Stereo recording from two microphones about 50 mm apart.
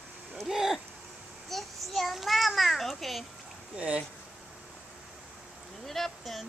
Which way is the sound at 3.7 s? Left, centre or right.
Right.